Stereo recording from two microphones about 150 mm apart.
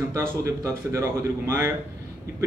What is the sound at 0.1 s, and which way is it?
Speech, 20° right (ahead or behind).